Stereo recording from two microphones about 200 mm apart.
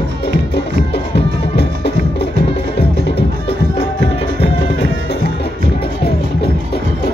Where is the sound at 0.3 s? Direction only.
55° left (ahead or behind).